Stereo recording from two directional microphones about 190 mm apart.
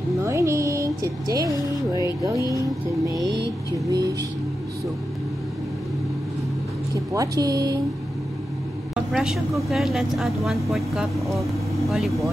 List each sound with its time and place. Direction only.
0.2 s a sound: 15° right (ahead or behind)
2.2 s speech: 15° right (ahead or behind)
3.7 s speech: 20° right (ahead or behind)
7.1 s speech: 20° right (ahead or behind)
9.1 s speech: centre (ahead or behind)